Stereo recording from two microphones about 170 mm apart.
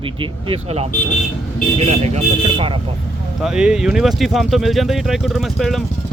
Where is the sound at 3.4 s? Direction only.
5° right (ahead or behind).